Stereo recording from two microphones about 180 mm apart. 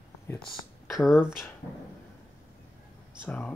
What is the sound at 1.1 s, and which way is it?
Speech, 15° left (ahead or behind).